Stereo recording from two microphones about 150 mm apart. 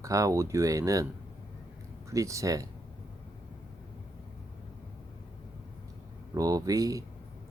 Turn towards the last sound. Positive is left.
turn(degrees=-25)  # may be behind; listen again after turning